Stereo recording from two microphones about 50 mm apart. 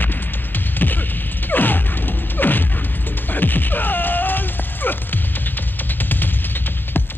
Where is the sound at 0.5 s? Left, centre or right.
Left.